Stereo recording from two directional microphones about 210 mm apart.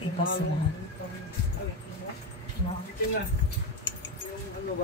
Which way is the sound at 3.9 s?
60° left (ahead or behind).